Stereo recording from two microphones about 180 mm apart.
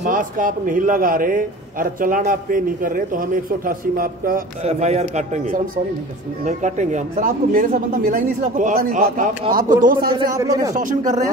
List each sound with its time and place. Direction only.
0.0 s a man's voice: 50° right (ahead or behind)
4.6 s a man's voice: 40° right (ahead or behind)
10.3 s a man's voice: 20° right (ahead or behind)
10.7 s a man's voice: 45° right (ahead or behind)